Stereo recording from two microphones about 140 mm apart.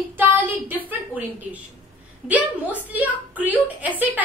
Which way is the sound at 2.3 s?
10° right (ahead or behind).